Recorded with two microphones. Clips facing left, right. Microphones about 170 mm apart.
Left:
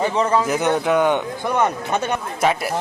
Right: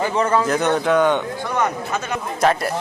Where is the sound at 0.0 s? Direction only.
Centre (ahead or behind).